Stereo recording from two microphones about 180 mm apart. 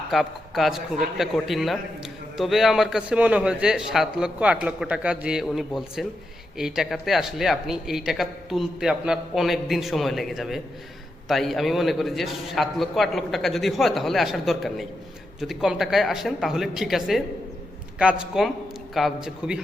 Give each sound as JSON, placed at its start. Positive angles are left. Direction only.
{"t": 0.1, "sound": "speech", "side_deg": 0}